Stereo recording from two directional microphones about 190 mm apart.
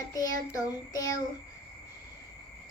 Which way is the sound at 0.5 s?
20° left (ahead or behind).